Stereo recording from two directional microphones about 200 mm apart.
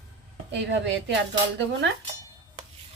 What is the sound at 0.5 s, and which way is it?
Speech, 60° right (ahead or behind).